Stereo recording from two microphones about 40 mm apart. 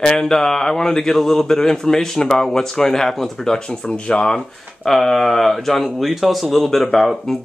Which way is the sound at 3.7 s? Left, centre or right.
Left.